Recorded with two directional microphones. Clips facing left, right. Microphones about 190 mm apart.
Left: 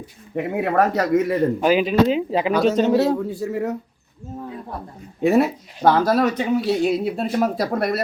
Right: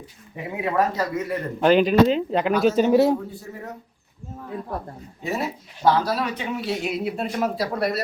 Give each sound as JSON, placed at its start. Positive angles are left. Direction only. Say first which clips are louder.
{"t": 0.3, "sound": "speech", "louder": "left 4 dB", "side_deg": 60}
{"t": 1.6, "sound": "speech", "louder": "right 3 dB", "side_deg": 5}
{"t": 2.8, "sound": "a man's voice", "louder": "even", "side_deg": -15}
{"t": 3.2, "sound": "speech", "louder": "left 12 dB", "side_deg": 85}
{"t": 5.2, "sound": "speech", "louder": "left 11 dB", "side_deg": 60}